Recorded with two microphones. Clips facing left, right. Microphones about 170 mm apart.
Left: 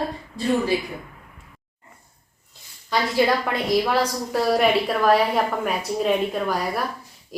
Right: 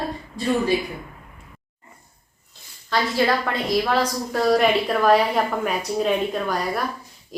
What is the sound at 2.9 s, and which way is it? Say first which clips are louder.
A woman's voice: left 1 dB; 10° left (ahead or behind).